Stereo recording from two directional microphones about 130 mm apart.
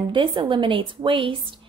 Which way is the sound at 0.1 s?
40° right (ahead or behind).